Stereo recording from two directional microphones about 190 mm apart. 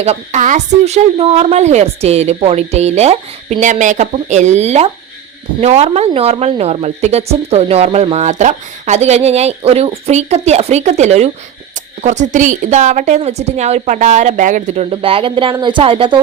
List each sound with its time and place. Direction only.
0.0 s speech: 35° right (ahead or behind)
14.8 s speech: 30° right (ahead or behind)